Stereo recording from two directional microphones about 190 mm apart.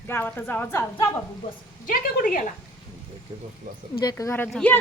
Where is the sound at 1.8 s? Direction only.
45° left (ahead or behind).